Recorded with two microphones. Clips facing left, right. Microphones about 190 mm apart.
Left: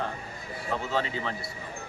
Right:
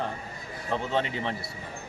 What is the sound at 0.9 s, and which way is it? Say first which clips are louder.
Speech: right 1 dB; 30° right (ahead or behind).